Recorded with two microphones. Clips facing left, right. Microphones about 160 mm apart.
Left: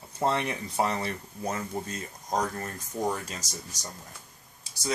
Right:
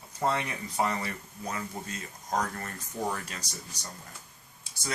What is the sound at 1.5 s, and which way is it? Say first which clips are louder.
Speech: left 4 dB; 40° left (ahead or behind).